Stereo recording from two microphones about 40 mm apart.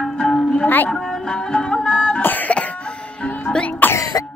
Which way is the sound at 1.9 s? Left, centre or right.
Left.